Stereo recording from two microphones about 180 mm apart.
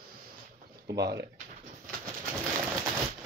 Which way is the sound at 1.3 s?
50° right (ahead or behind).